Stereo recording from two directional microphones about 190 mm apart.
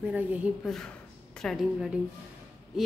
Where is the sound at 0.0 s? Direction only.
10° right (ahead or behind).